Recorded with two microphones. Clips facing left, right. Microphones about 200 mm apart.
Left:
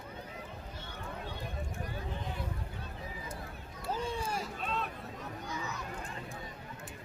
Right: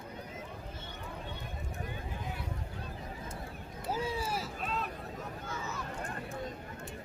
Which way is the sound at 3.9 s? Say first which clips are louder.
Right 1 dB; 5° right (ahead or behind).